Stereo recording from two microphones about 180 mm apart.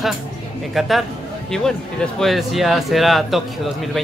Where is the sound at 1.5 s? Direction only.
Centre (ahead or behind).